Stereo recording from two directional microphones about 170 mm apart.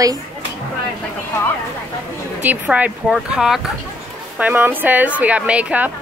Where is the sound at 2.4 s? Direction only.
10° right (ahead or behind).